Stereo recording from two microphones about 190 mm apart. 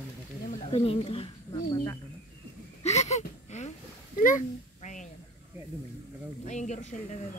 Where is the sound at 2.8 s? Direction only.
35° left (ahead or behind).